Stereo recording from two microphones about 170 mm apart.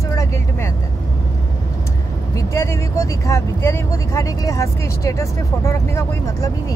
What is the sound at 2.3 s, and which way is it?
Speech, 20° left (ahead or behind).